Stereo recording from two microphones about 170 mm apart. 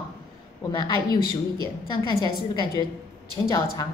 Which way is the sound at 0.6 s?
25° left (ahead or behind).